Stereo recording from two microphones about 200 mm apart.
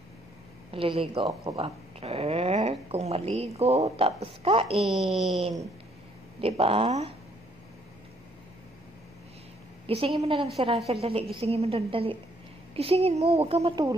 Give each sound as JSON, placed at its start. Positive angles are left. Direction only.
{"t": 0.7, "sound": "speech", "side_deg": -25}
{"t": 4.7, "sound": "speech", "side_deg": 0}
{"t": 6.4, "sound": "speech", "side_deg": -30}
{"t": 9.8, "sound": "speech", "side_deg": -25}